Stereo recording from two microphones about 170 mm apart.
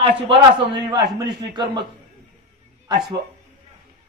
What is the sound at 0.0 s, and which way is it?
A man's voice, 30° right (ahead or behind).